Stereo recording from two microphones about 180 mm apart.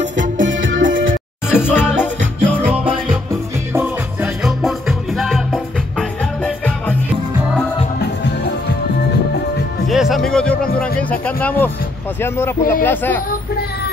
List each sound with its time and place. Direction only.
0.2 s music: 90° right
1.5 s music: 10° left (ahead or behind)
2.6 s music: 5° right (ahead or behind); by 7.0 s 10° left (ahead or behind)
8.0 s music: 65° left (ahead or behind)
9.8 s music: centre (ahead or behind)
12.2 s speech: 15° left (ahead or behind)